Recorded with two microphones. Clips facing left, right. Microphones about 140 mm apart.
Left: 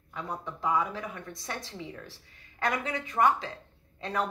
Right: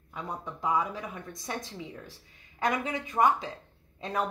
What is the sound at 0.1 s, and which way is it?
Speech, 15° right (ahead or behind).